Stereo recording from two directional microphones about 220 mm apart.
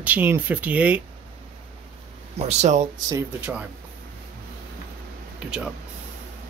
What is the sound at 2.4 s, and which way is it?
Speech, 30° right (ahead or behind).